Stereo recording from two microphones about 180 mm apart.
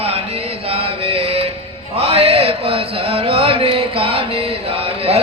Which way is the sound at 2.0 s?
35° right (ahead or behind).